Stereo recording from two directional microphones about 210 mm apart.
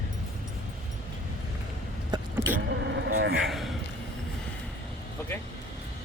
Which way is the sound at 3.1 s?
45° right (ahead or behind).